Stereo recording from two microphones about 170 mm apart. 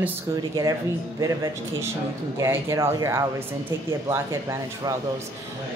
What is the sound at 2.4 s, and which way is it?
Speech, 15° right (ahead or behind).